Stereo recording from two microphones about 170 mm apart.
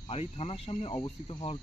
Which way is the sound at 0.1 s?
35° left (ahead or behind).